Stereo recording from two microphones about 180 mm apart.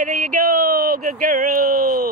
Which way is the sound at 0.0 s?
55° right (ahead or behind).